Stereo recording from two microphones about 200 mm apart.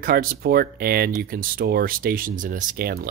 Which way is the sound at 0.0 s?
45° right (ahead or behind).